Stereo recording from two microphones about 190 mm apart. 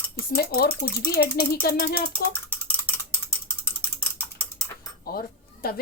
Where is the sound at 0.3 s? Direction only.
55° left (ahead or behind).